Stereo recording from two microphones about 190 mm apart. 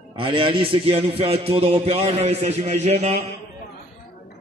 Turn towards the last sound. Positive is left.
turn(degrees=-35)  # may be behind; listen again after turning